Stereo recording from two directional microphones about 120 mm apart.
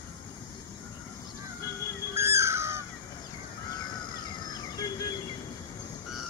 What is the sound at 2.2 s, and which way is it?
Crow, 25° right (ahead or behind).